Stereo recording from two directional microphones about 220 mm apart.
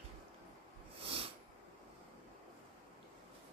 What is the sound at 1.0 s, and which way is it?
Snort, 25° right (ahead or behind).